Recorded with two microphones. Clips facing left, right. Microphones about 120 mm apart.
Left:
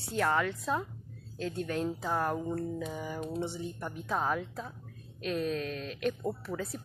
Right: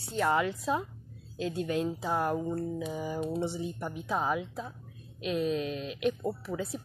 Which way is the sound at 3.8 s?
10° right (ahead or behind).